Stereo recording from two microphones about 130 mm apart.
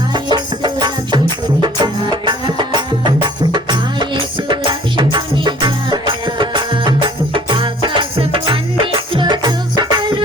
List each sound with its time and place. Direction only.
0.1 s music: 35° right (ahead or behind)